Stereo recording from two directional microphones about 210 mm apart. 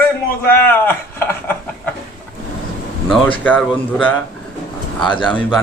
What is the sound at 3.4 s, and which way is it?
Speech, 5° left (ahead or behind).